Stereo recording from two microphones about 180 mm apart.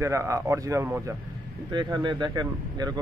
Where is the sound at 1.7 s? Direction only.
25° right (ahead or behind).